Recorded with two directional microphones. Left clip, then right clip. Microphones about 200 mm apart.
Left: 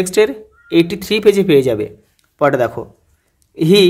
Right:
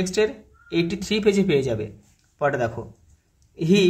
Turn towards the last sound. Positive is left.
turn(degrees=45)  # may be behind; listen again after turning